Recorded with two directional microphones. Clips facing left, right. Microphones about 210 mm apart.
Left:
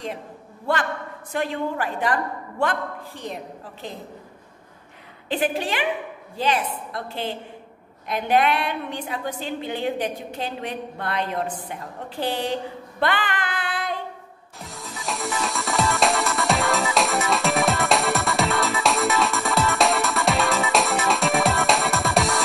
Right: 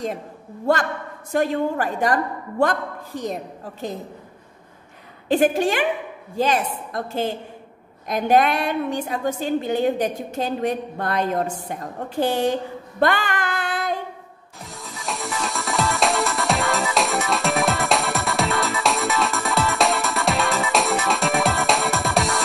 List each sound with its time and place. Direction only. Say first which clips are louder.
0.7 s a woman's voice: right 4 dB; 40° right (ahead or behind)
5.3 s a woman's voice: right 6 dB; 45° right (ahead or behind)
13.0 s a sound: right 4 dB; 45° right (ahead or behind)
14.6 s music: even; centre (ahead or behind)